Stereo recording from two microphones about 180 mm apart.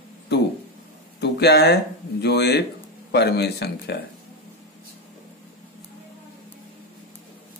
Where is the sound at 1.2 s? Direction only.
65° left (ahead or behind).